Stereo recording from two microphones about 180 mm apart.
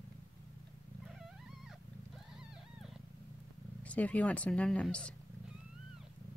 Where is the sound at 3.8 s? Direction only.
10° left (ahead or behind).